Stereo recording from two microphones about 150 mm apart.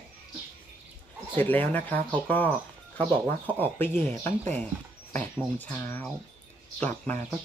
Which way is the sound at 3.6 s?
10° left (ahead or behind).